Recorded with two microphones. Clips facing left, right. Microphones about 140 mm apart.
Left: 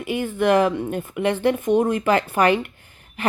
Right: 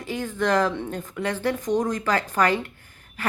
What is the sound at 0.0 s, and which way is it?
A woman's voice, 15° left (ahead or behind).